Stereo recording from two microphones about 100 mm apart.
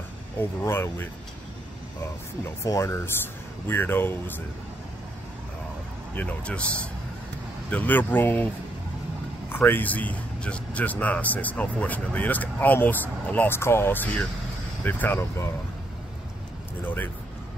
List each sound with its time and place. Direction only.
0.4 s speech: 25° left (ahead or behind)
2.4 s speech: 30° left (ahead or behind)
3.6 s speech: 20° left (ahead or behind)
6.1 s a man's voice: 10° left (ahead or behind)
9.5 s a man's voice: 20° left (ahead or behind)
16.8 s speech: 20° left (ahead or behind)